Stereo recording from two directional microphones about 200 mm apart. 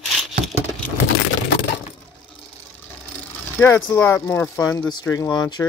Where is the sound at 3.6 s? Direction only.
10° left (ahead or behind).